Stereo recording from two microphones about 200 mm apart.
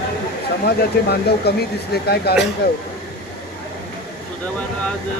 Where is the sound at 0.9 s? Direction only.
50° left (ahead or behind).